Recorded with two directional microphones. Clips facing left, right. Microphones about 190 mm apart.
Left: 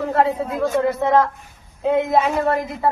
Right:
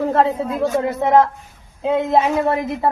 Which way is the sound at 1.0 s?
20° right (ahead or behind).